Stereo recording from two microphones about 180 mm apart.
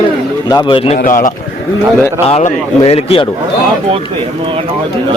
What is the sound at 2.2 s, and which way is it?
A man's voice, 35° left (ahead or behind).